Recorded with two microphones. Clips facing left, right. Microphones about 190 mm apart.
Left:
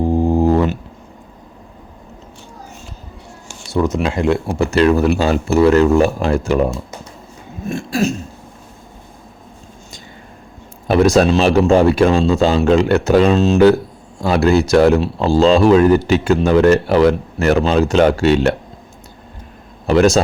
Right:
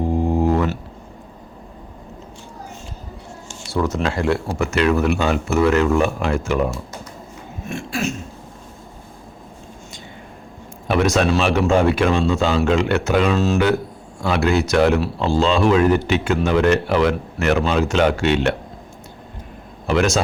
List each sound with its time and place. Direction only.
0.1 s a sound: 30° left (ahead or behind)
3.7 s speech: 15° left (ahead or behind)
4.5 s speech: 30° left (ahead or behind)
7.7 s a sound: 40° left (ahead or behind)
10.8 s speech: 35° left (ahead or behind)
13.3 s speech: 20° left (ahead or behind)
14.2 s speech: 35° left (ahead or behind)
19.9 s speech: 35° left (ahead or behind)